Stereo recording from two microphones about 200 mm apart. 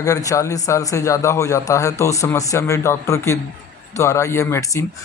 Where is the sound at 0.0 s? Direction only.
15° left (ahead or behind).